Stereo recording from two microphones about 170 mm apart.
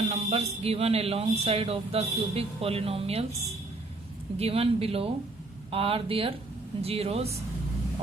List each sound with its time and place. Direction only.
0.1 s speech: 40° right (ahead or behind)
4.4 s speech: 35° right (ahead or behind)